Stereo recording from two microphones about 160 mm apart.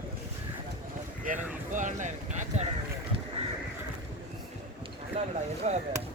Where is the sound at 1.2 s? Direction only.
55° right (ahead or behind).